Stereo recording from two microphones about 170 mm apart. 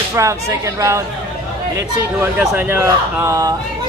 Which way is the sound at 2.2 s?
10° right (ahead or behind).